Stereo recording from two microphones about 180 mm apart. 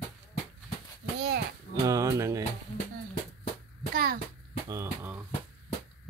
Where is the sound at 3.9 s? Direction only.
55° right (ahead or behind).